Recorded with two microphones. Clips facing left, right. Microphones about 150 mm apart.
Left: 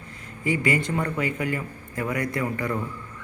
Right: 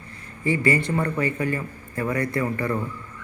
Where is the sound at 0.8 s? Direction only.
Centre (ahead or behind).